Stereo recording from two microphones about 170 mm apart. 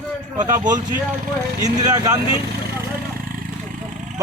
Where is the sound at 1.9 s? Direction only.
20° right (ahead or behind).